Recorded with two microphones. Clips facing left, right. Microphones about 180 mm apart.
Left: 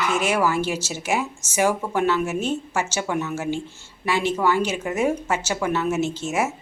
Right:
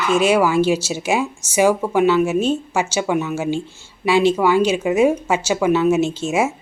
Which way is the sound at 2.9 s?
15° right (ahead or behind).